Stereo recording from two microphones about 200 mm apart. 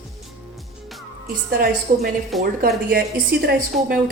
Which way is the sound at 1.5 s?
50° right (ahead or behind).